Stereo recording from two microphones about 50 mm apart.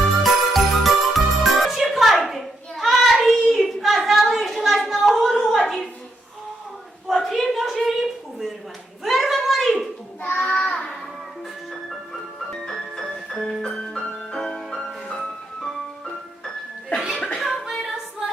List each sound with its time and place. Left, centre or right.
0.2 s jingle bell: centre
2.1 s hands: centre
4.5 s a sound: centre
7.1 s a sound: centre
10.2 s child singing: left
10.5 s child singing: centre
12.5 s music: centre
17.3 s child singing: centre